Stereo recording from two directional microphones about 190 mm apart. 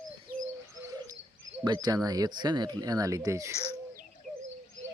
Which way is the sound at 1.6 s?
20° right (ahead or behind).